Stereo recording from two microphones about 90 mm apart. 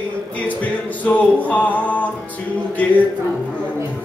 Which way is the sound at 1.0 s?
15° left (ahead or behind).